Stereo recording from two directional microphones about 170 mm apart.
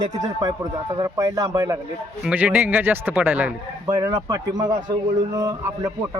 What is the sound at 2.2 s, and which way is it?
A man's voice, 10° right (ahead or behind).